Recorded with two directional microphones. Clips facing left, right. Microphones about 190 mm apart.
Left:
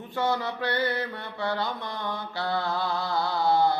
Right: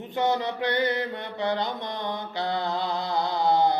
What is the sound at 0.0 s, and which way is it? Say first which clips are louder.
Mantra: right 2 dB; 20° right (ahead or behind).